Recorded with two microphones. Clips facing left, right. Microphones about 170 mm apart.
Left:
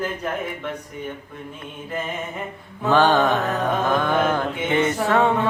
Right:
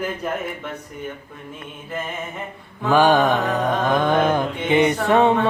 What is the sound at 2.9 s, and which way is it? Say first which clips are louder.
Mantra: right 2 dB; 10° right (ahead or behind).